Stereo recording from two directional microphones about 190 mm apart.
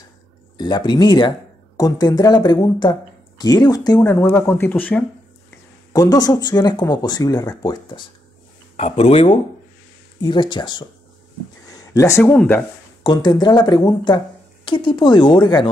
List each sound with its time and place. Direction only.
0.6 s speech: 20° left (ahead or behind)
5.9 s speech: 20° left (ahead or behind)
8.7 s speech: 35° left (ahead or behind)
10.2 s speech: 25° left (ahead or behind); by 12.6 s 10° left (ahead or behind)
13.0 s speech: 25° left (ahead or behind)